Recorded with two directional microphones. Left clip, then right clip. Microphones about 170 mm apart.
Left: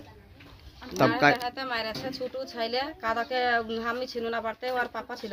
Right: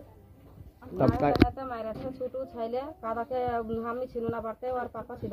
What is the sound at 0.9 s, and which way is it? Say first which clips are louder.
Speech: left 4 dB; 15° left (ahead or behind).